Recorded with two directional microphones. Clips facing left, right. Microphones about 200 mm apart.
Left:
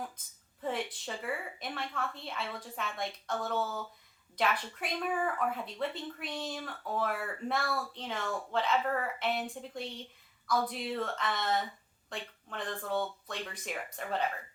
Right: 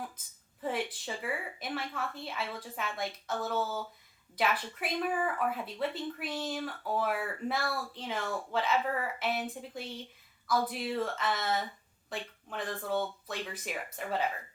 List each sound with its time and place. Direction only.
0.6 s speech: 5° right (ahead or behind)